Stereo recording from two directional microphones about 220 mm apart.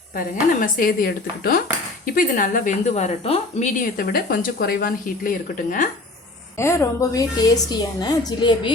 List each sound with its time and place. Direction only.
0.2 s a woman's voice: 40° left (ahead or behind)
6.6 s a woman's voice: 10° left (ahead or behind)